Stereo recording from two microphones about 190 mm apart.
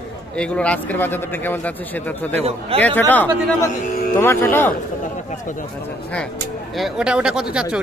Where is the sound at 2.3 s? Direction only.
30° right (ahead or behind).